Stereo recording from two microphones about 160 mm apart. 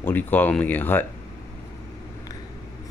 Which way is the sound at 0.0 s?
10° left (ahead or behind).